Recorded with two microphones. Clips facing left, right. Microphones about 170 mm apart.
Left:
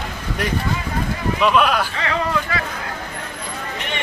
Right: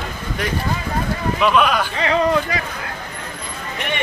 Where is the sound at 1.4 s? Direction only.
Centre (ahead or behind).